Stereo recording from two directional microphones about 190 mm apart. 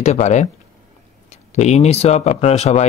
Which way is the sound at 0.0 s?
35° left (ahead or behind).